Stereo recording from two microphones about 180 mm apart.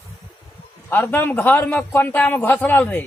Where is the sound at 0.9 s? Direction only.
10° left (ahead or behind).